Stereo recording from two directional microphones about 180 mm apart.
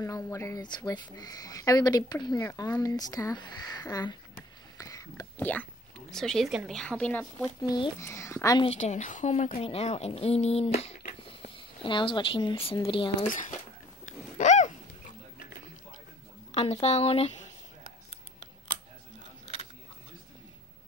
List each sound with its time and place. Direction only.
0.0 s speech: 15° left (ahead or behind)
7.6 s speech: 25° left (ahead or behind)
8.6 s a woman's voice: 40° left (ahead or behind)
13.3 s speech: 45° left (ahead or behind)
14.4 s dog: 40° left (ahead or behind)
16.5 s speech: 35° left (ahead or behind)